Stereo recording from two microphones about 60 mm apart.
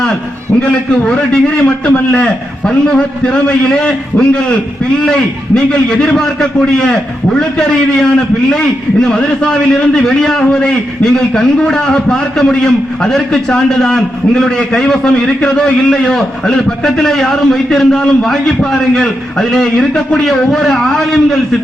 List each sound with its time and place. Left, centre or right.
0.6 s a man's voice: centre